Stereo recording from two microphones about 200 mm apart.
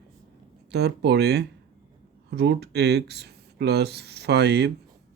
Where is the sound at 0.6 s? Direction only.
55° right (ahead or behind).